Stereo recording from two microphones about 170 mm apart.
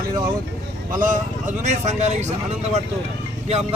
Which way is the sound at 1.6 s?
40° right (ahead or behind).